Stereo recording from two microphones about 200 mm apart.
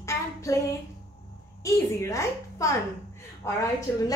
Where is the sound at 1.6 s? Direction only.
15° left (ahead or behind).